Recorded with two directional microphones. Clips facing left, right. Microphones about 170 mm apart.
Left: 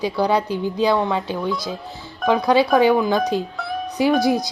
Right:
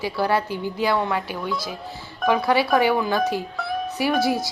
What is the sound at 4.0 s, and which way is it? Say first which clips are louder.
Speech: left 5 dB; 20° left (ahead or behind).